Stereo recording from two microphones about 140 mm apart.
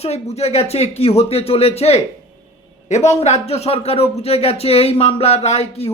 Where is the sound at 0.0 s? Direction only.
50° left (ahead or behind).